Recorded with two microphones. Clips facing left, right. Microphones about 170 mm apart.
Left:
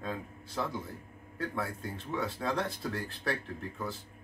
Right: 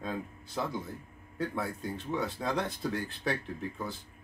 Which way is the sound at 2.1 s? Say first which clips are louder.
Even; centre (ahead or behind).